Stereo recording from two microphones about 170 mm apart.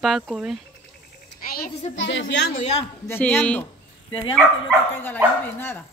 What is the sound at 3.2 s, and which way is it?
Speech, 10° left (ahead or behind).